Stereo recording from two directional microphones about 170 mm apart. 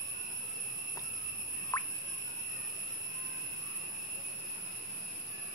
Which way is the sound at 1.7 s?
15° left (ahead or behind).